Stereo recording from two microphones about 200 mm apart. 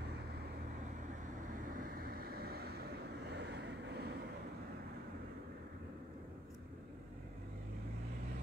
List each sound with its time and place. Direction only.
2.0 s vehicle: 50° right (ahead or behind)